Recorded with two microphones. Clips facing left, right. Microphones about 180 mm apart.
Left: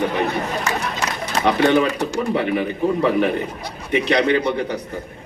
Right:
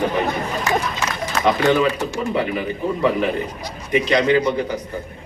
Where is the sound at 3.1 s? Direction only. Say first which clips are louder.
Left 2 dB; 60° left (ahead or behind).